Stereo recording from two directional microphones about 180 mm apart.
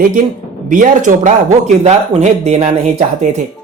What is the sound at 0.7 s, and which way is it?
Speech, 45° right (ahead or behind).